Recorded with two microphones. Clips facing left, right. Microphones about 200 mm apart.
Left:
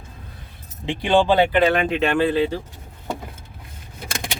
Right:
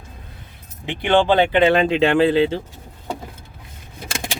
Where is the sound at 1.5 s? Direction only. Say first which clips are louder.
Right 3 dB; 25° right (ahead or behind).